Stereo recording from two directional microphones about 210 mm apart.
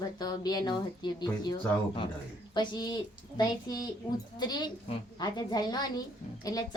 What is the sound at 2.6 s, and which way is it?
A woman's voice, 20° left (ahead or behind).